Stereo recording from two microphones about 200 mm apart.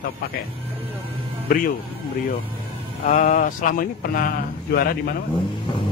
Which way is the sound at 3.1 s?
40° left (ahead or behind).